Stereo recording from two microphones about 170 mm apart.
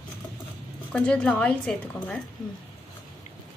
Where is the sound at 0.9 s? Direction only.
5° left (ahead or behind).